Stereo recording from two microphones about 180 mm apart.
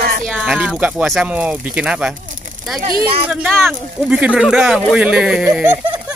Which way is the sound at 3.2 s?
10° right (ahead or behind).